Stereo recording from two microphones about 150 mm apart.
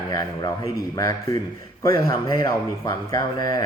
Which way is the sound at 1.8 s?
25° left (ahead or behind).